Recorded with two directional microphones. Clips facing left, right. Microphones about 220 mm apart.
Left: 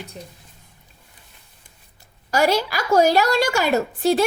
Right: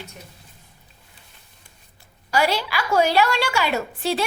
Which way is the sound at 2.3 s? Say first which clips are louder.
Left 3 dB; 45° left (ahead or behind).